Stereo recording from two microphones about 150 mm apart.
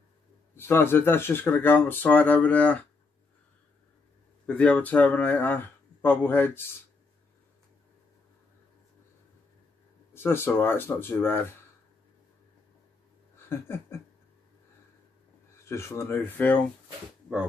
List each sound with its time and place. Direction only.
0.6 s speech: 15° left (ahead or behind)
4.5 s speech: 10° left (ahead or behind)
10.1 s speech: 15° left (ahead or behind)
13.5 s speech: 15° left (ahead or behind)
15.6 s speech: 20° left (ahead or behind)